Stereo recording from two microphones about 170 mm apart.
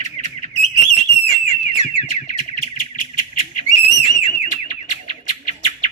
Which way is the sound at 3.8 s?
40° left (ahead or behind).